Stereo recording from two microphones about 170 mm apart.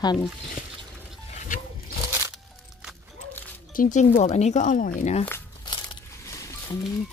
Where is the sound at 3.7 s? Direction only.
50° left (ahead or behind).